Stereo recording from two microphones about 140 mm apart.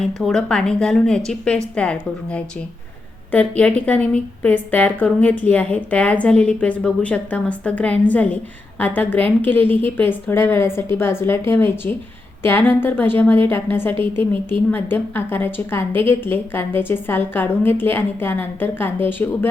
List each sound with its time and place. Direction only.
0.0 s a woman's voice: centre (ahead or behind)
13.9 s a woman's voice: 40° right (ahead or behind)
14.7 s a woman's voice: 15° left (ahead or behind)